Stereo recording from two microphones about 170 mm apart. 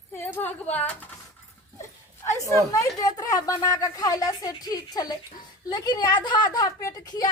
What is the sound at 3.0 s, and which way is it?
A woman's voice, 20° left (ahead or behind).